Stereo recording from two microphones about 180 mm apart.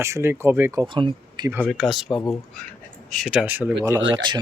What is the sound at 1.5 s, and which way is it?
Speech, 10° right (ahead or behind).